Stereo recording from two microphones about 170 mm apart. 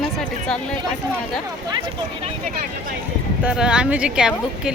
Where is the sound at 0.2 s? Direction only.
5° left (ahead or behind).